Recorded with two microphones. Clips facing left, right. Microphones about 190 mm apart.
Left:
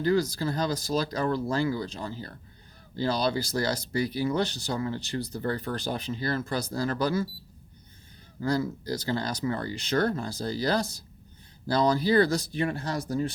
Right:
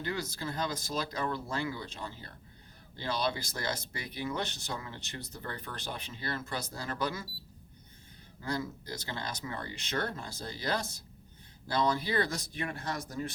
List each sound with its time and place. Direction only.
0.0 s speech: 35° left (ahead or behind)
8.4 s speech: 35° left (ahead or behind)